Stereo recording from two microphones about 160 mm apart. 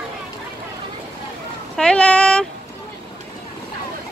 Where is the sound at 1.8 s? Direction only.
5° left (ahead or behind).